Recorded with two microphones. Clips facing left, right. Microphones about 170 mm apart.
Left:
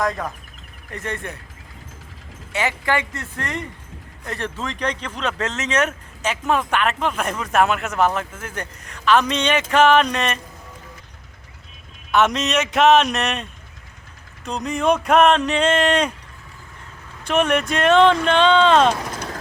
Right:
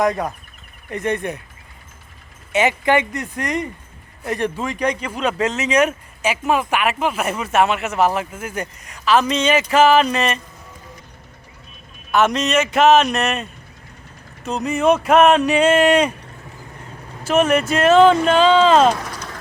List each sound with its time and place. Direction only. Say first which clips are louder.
0.0 s speech: right 4 dB; 20° right (ahead or behind)
2.5 s speech: right 6 dB; 20° right (ahead or behind); by 10.4 s 5° right (ahead or behind)
12.1 s speech: right 2 dB; centre (ahead or behind)
17.2 s speech: right 3 dB; 5° right (ahead or behind)